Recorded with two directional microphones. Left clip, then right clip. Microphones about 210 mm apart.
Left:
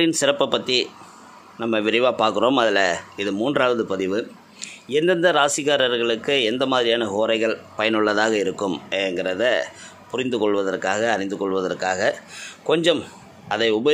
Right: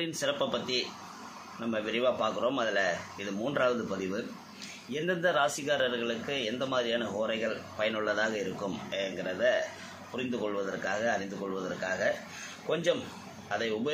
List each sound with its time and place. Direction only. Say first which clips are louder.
0.0 s speech: left 12 dB; 55° left (ahead or behind)